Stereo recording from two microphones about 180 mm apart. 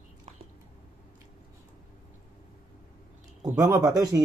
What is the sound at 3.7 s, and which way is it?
Speech, 20° right (ahead or behind).